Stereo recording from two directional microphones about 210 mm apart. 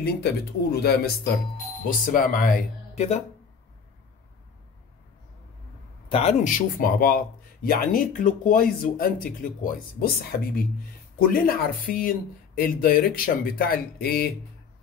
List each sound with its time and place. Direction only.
0.0 s speech: 50° left (ahead or behind); by 3.3 s 30° left (ahead or behind)
6.0 s speech: 30° left (ahead or behind); by 14.3 s 45° left (ahead or behind)